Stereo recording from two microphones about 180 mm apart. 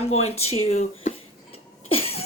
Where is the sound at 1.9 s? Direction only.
35° left (ahead or behind).